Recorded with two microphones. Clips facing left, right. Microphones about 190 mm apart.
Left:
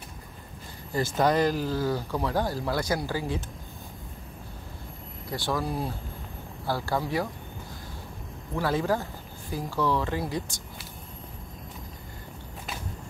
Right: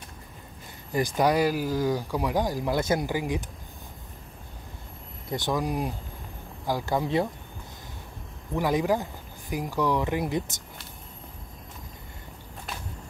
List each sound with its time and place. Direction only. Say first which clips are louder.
0.9 s speech: right 1 dB; 15° right (ahead or behind)
5.3 s speech: right 2 dB; 20° right (ahead or behind)
8.5 s speech: right 2 dB; 15° right (ahead or behind)